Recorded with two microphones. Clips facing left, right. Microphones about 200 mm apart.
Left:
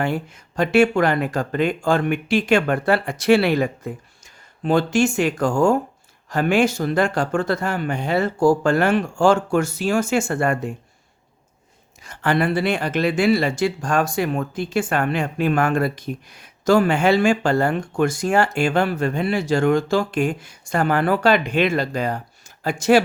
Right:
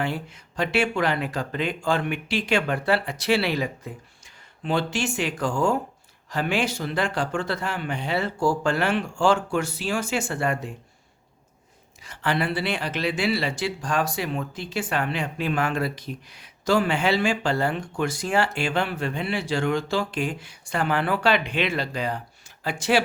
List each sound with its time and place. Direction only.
0.0 s speech: 45° left (ahead or behind)
12.0 s speech: 50° left (ahead or behind)